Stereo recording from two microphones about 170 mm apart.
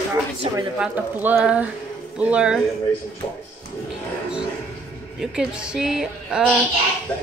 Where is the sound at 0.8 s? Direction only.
10° right (ahead or behind).